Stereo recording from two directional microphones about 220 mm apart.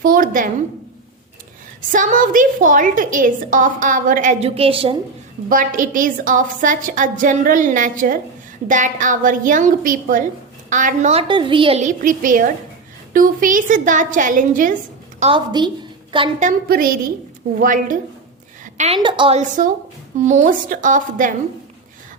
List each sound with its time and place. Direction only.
0.0 s a sound: 40° right (ahead or behind)
1.9 s a woman's voice: 35° right (ahead or behind)
5.5 s a woman's voice: 40° right (ahead or behind)
15.2 s a woman's voice: 20° right (ahead or behind)
16.4 s a woman's voice: 40° right (ahead or behind)
18.6 s a sound: 35° right (ahead or behind)
18.9 s a woman's voice: 20° right (ahead or behind)
19.4 s a woman's voice: 35° right (ahead or behind)